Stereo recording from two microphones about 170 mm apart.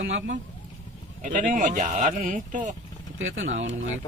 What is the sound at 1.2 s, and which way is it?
Speech, 50° right (ahead or behind).